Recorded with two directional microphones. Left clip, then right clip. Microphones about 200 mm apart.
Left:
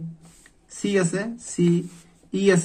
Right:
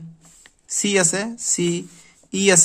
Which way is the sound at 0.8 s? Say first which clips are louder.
Right 3 dB; 50° right (ahead or behind).